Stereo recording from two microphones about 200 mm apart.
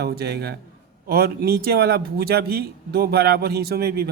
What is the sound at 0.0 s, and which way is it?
Speech, 55° right (ahead or behind).